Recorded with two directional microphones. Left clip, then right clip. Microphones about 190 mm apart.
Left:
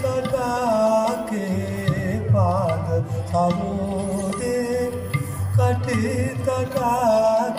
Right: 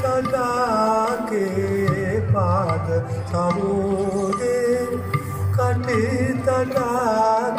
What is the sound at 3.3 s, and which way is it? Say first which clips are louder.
Music: even; 20° left (ahead or behind).